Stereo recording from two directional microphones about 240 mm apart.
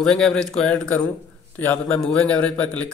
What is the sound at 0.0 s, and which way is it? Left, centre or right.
A man's voice, centre.